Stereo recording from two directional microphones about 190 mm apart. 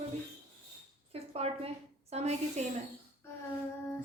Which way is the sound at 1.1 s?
30° right (ahead or behind).